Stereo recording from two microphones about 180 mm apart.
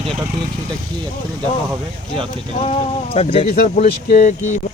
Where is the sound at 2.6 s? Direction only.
35° left (ahead or behind).